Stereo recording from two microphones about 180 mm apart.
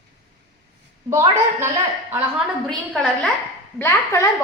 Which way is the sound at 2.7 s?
5° left (ahead or behind).